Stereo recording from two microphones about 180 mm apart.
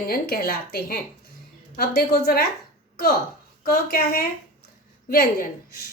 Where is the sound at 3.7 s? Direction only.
55° left (ahead or behind).